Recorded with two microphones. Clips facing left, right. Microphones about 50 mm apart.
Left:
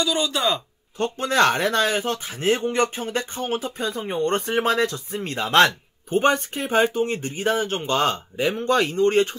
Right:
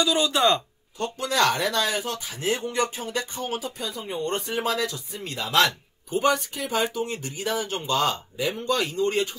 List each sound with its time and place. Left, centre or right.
0.0 s speech: centre
0.9 s speech: left